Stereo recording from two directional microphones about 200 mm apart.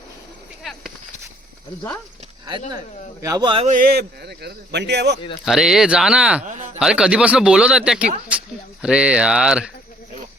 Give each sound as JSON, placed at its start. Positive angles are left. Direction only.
{"t": 0.6, "sound": "a sound", "side_deg": 0}
{"t": 2.5, "sound": "speech", "side_deg": -20}
{"t": 3.7, "sound": "speech", "side_deg": -45}
{"t": 5.5, "sound": "speech", "side_deg": 0}
{"t": 6.4, "sound": "speech", "side_deg": -35}
{"t": 6.7, "sound": "speech", "side_deg": -5}